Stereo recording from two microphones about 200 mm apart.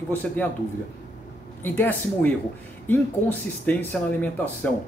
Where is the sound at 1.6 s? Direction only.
10° left (ahead or behind).